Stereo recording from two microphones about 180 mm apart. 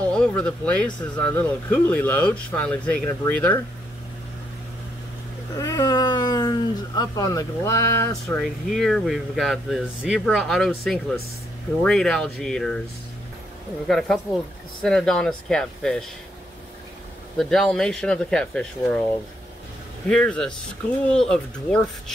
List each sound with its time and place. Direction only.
0.1 s speech: 5° left (ahead or behind)
5.6 s cat: 20° left (ahead or behind)
8.4 s speech: centre (ahead or behind)
13.8 s speech: centre (ahead or behind)
17.4 s speech: centre (ahead or behind)
20.1 s speech: 5° left (ahead or behind)